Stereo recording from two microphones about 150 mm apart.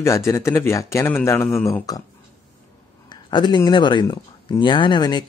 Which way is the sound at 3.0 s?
30° left (ahead or behind).